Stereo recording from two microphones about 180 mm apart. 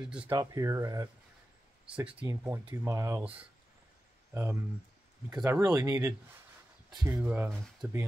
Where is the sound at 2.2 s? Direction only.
20° right (ahead or behind).